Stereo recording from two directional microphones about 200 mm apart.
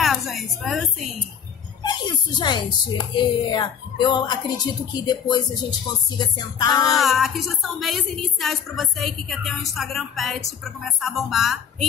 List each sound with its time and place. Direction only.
0.0 s a woman's voice: centre (ahead or behind)
1.8 s speech: 20° left (ahead or behind)
6.9 s a woman's voice: centre (ahead or behind)